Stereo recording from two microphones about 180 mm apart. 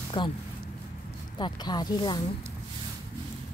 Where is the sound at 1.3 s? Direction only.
25° left (ahead or behind).